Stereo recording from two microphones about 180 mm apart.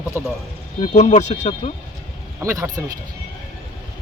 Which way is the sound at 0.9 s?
40° left (ahead or behind).